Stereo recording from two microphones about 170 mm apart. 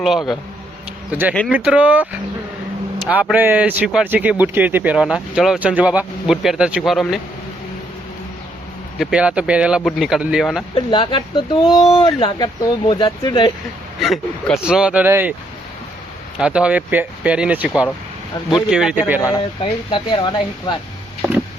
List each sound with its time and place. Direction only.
0.0 s speech: centre (ahead or behind)
1.5 s speech: 5° right (ahead or behind)
3.3 s speech: 10° right (ahead or behind)
9.0 s speech: 5° right (ahead or behind)
10.8 s speech: 30° left (ahead or behind)
14.0 s speech: centre (ahead or behind)
16.4 s speech: 5° right (ahead or behind)
18.3 s speech: 25° left (ahead or behind)
18.7 s speech: 5° right (ahead or behind)
19.6 s speech: 30° left (ahead or behind)